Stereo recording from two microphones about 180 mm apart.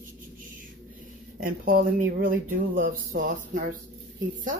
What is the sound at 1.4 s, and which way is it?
Speech, 50° right (ahead or behind).